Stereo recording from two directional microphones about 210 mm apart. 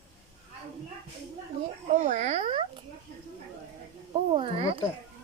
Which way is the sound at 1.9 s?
35° right (ahead or behind).